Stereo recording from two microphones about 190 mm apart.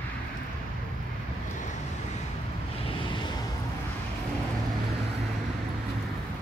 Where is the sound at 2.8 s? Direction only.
25° left (ahead or behind).